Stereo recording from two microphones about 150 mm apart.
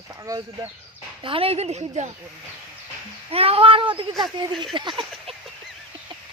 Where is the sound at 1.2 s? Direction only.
40° right (ahead or behind).